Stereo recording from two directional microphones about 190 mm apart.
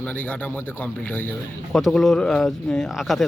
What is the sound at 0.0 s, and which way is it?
Speech, 10° left (ahead or behind).